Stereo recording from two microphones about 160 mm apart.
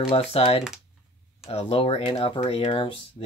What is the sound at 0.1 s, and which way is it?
Speech, 40° left (ahead or behind).